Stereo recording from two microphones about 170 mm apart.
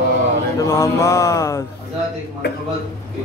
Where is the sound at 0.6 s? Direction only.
15° left (ahead or behind).